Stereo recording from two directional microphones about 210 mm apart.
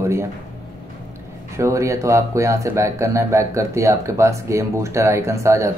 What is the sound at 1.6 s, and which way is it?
Speech, 15° right (ahead or behind).